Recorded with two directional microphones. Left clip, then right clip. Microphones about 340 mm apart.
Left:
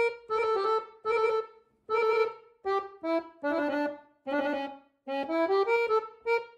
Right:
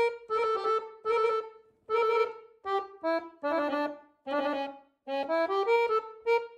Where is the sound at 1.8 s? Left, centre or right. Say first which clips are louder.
Even; centre.